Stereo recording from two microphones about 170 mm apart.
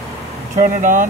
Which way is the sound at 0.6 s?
50° right (ahead or behind).